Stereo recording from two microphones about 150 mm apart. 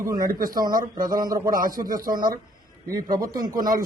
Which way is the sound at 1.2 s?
70° right (ahead or behind).